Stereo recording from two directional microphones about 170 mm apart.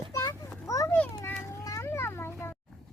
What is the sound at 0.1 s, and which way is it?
Children playing, 20° left (ahead or behind).